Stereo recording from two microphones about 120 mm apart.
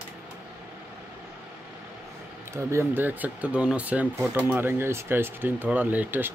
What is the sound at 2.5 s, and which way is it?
Speech, 20° right (ahead or behind).